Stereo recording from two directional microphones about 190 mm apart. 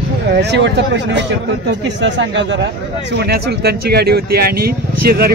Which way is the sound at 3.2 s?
60° right (ahead or behind).